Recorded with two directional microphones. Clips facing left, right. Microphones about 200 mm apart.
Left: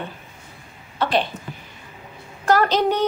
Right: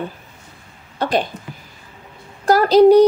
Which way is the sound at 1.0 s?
45° right (ahead or behind).